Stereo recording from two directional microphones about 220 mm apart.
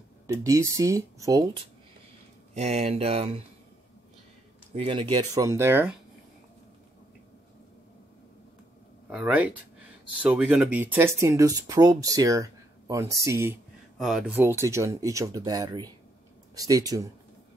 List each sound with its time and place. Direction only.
0.3 s speech: 15° right (ahead or behind)
2.5 s speech: 30° right (ahead or behind)
4.7 s speech: 25° right (ahead or behind)
9.1 s speech: 5° right (ahead or behind)